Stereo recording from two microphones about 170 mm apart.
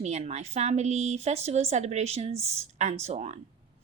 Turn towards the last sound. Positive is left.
turn(degrees=-40)  # may be behind; listen again after turning